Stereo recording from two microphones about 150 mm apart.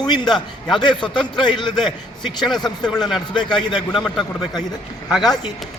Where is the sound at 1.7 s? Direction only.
Centre (ahead or behind).